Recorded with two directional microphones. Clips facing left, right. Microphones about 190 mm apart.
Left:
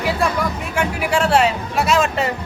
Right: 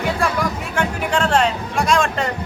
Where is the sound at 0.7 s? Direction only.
10° left (ahead or behind).